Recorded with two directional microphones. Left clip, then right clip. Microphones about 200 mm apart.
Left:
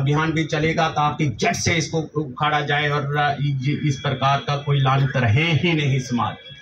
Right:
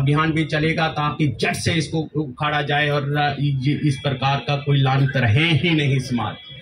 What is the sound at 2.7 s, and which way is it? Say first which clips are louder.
Speech: right 1 dB; 25° left (ahead or behind).